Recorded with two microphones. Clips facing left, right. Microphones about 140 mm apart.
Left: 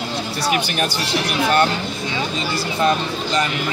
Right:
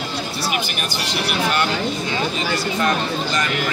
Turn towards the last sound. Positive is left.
turn(degrees=25)  # may be behind; listen again after turning